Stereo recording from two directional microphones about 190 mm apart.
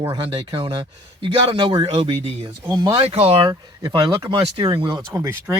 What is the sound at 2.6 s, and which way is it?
Speech, 20° right (ahead or behind).